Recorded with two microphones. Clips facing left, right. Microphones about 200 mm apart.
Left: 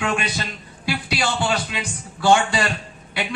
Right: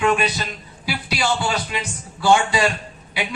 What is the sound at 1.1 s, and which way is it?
Speech, 55° left (ahead or behind).